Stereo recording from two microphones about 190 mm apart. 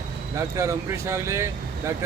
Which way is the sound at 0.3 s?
15° right (ahead or behind).